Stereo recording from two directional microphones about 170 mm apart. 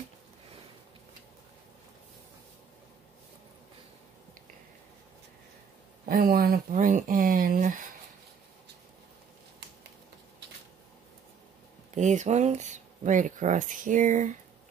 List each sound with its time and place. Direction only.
6.0 s speech: 55° right (ahead or behind)
11.9 s speech: 45° right (ahead or behind)